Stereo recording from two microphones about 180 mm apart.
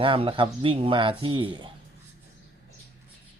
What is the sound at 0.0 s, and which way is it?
Speech, 30° right (ahead or behind).